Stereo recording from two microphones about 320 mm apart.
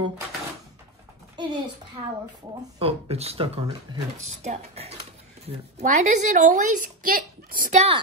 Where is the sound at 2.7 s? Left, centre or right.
Centre.